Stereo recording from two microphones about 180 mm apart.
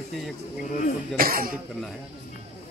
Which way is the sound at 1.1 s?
55° right (ahead or behind).